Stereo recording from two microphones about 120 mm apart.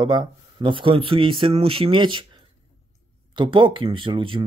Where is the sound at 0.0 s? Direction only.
40° right (ahead or behind).